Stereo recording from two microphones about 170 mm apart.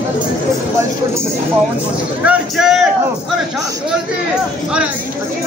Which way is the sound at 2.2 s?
Centre (ahead or behind).